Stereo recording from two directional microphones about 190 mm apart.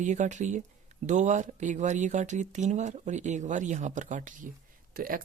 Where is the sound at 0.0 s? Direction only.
40° right (ahead or behind).